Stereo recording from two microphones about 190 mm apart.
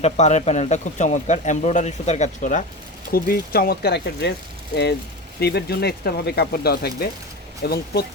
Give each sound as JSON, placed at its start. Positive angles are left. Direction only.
{"t": 0.0, "sound": "speech", "side_deg": 35}